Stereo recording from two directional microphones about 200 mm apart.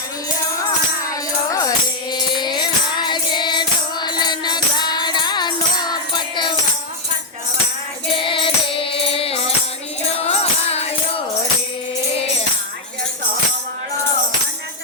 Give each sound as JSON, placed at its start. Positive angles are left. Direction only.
{"t": 1.0, "sound": "music", "side_deg": 15}
{"t": 8.1, "sound": "music", "side_deg": 25}